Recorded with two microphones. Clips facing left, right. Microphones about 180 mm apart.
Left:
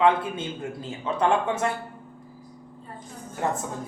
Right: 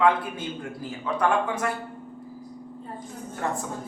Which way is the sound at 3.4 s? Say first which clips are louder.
Left 2 dB; 20° left (ahead or behind).